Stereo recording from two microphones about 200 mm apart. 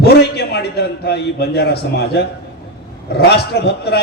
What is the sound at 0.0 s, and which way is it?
A man's voice, 55° left (ahead or behind).